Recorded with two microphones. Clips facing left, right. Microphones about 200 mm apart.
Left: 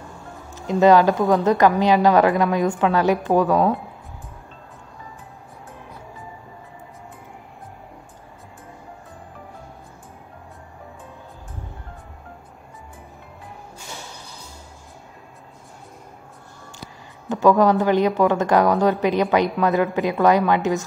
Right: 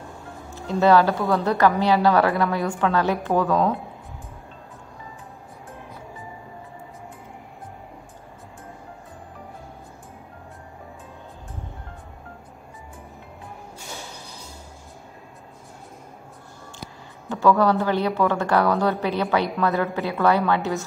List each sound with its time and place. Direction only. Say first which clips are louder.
0.6 s a woman's voice: left 3 dB; 15° left (ahead or behind)
17.3 s a woman's voice: left 3 dB; 20° left (ahead or behind)